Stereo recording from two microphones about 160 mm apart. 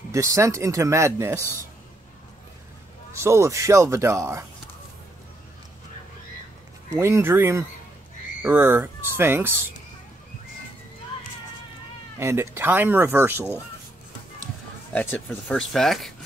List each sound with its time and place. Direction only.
0.1 s speech: 20° right (ahead or behind)
3.1 s a man's voice: 15° right (ahead or behind)
6.9 s a man's voice: 15° right (ahead or behind)
12.2 s a man's voice: 15° right (ahead or behind)
14.9 s speech: 10° left (ahead or behind)